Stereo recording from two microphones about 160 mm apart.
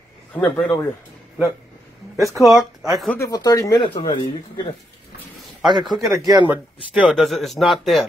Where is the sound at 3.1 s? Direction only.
20° left (ahead or behind).